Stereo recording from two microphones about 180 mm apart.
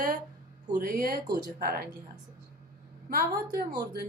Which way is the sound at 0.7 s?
50° right (ahead or behind).